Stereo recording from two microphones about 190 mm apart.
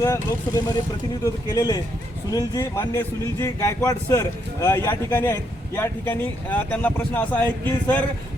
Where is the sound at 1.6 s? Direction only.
15° left (ahead or behind).